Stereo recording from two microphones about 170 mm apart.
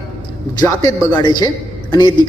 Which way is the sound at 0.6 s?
20° left (ahead or behind).